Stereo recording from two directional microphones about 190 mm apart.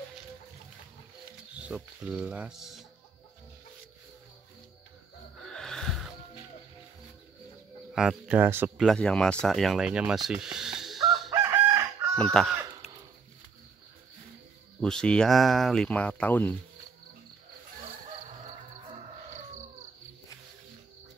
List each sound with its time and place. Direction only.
1.7 s speech: 5° right (ahead or behind)
5.4 s music: 5° left (ahead or behind)
7.9 s speech: centre (ahead or behind)
11.2 s chicken: 20° right (ahead or behind)
12.4 s speech: centre (ahead or behind)
14.8 s speech: 5° left (ahead or behind)